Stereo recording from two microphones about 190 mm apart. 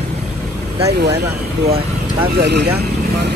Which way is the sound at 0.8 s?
60° right (ahead or behind).